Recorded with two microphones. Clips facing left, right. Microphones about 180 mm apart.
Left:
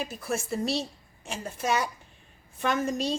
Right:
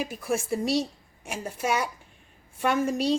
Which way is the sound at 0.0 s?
10° right (ahead or behind).